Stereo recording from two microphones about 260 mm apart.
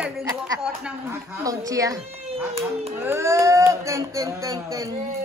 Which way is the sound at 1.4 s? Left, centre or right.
Centre.